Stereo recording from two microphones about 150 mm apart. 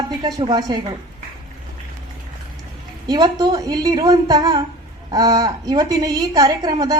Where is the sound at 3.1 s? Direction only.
30° right (ahead or behind).